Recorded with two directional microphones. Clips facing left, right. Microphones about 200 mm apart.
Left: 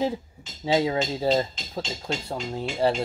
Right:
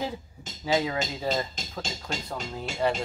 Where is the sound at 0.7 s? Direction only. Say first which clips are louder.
Left 4 dB; 25° left (ahead or behind).